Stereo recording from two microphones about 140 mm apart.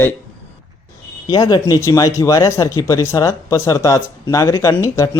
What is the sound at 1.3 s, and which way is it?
Speech, 30° left (ahead or behind).